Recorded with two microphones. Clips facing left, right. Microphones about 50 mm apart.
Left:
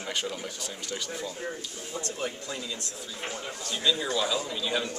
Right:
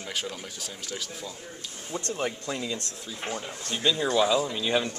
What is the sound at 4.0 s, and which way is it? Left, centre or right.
Speech, right.